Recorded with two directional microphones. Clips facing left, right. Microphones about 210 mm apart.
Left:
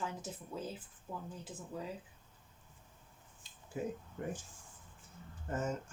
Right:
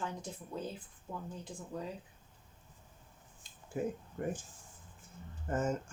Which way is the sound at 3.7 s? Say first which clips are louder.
Right 3 dB; 50° right (ahead or behind).